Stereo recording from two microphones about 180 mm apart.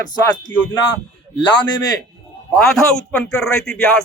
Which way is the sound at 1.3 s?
25° left (ahead or behind).